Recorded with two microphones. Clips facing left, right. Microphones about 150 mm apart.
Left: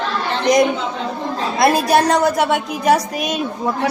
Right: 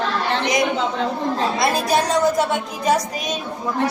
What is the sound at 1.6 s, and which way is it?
A woman's voice, 65° left (ahead or behind).